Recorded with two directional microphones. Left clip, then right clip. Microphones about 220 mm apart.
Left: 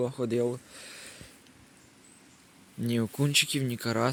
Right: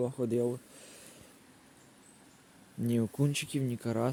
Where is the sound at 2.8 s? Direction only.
10° right (ahead or behind).